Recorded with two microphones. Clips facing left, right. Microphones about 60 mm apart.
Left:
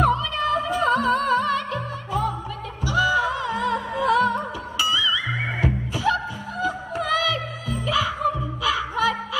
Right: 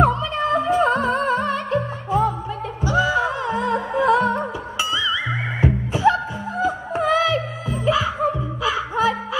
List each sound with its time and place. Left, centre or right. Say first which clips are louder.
0.0 s music: right 2 dB; right